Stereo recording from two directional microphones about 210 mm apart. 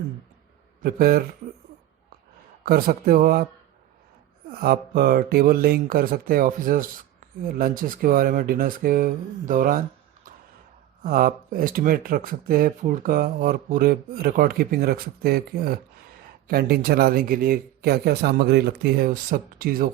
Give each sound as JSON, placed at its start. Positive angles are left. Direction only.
{"t": 0.8, "sound": "speech", "side_deg": -45}
{"t": 2.6, "sound": "speech", "side_deg": -45}
{"t": 4.4, "sound": "speech", "side_deg": -45}
{"t": 11.0, "sound": "speech", "side_deg": -45}